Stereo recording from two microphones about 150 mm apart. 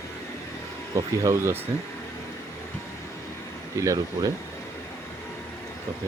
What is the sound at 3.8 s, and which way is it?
Speech, 20° right (ahead or behind).